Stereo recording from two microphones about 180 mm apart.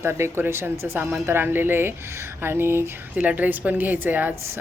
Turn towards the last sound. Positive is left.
turn(degrees=-10)  # may be behind; listen again after turning